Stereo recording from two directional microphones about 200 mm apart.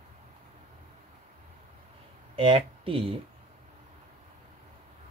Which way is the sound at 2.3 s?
25° right (ahead or behind).